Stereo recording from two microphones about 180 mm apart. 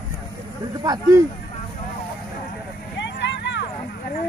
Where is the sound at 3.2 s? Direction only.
75° left (ahead or behind).